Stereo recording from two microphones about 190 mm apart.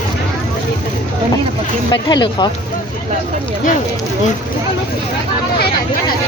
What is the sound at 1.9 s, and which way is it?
Speech, 20° left (ahead or behind).